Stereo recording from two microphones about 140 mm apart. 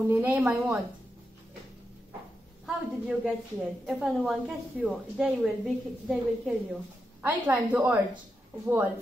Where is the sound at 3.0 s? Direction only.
5° right (ahead or behind).